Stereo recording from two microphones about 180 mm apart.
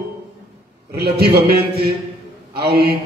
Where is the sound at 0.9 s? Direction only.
65° right (ahead or behind).